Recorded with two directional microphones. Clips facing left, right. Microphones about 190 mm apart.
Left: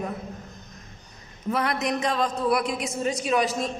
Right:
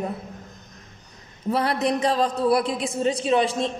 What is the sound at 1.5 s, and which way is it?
A woman's voice, 30° right (ahead or behind).